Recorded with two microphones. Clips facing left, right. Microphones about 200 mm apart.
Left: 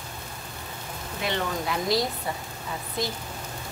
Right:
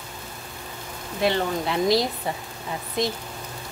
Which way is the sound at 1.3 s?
25° right (ahead or behind).